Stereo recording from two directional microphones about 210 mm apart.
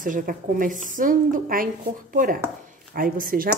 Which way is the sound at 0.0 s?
40° right (ahead or behind).